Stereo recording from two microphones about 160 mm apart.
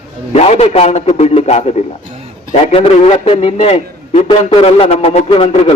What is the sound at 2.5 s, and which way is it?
A man's voice, 40° left (ahead or behind).